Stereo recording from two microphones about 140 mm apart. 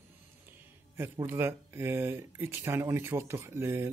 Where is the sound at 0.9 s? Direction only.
15° right (ahead or behind).